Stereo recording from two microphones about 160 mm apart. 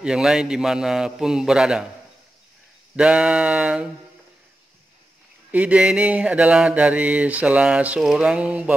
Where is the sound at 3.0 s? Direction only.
5° right (ahead or behind).